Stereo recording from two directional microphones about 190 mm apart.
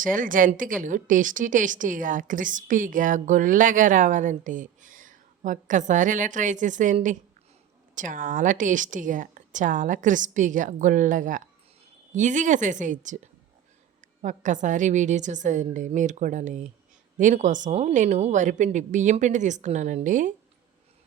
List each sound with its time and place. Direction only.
0.0 s a woman's voice: 45° right (ahead or behind)